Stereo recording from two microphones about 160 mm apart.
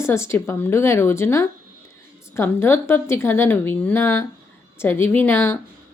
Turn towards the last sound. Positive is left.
turn(degrees=15)  # may be behind; listen again after turning